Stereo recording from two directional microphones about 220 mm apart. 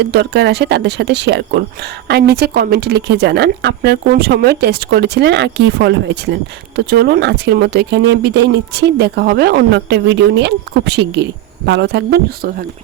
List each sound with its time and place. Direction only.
0.0 s speech: 50° right (ahead or behind)